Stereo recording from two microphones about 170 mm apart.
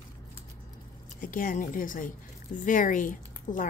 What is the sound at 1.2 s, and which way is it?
A woman's voice, 55° left (ahead or behind).